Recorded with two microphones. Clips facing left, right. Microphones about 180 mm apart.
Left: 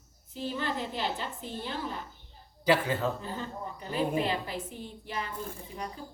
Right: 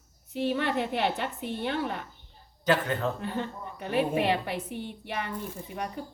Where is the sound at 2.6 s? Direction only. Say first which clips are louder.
Even; 10° left (ahead or behind).